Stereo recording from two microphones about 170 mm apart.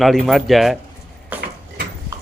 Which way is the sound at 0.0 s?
Centre (ahead or behind).